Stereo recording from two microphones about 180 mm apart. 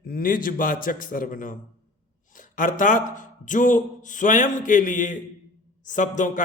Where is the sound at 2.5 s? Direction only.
45° left (ahead or behind).